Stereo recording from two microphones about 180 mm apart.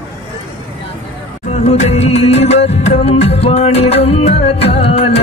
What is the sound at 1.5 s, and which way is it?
Music, 35° left (ahead or behind).